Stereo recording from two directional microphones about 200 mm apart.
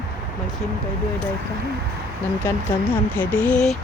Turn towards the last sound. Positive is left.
turn(degrees=5)  # may be behind; listen again after turning